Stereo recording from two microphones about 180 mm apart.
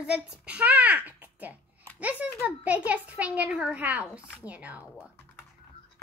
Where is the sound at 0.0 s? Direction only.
5° right (ahead or behind).